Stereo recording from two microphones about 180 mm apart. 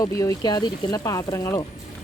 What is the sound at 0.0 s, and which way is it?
Speech, 20° left (ahead or behind).